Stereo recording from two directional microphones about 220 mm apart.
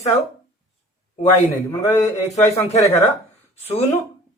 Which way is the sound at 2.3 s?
30° left (ahead or behind).